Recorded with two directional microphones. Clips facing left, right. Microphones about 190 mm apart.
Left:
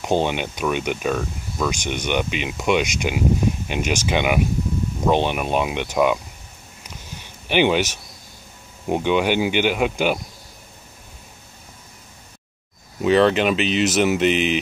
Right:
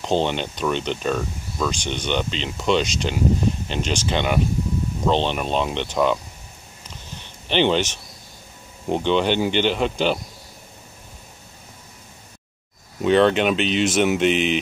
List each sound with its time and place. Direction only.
0.0 s speech: 10° left (ahead or behind)
7.2 s a sound: 10° left (ahead or behind)
8.8 s speech: 10° left (ahead or behind)
13.0 s speech: centre (ahead or behind)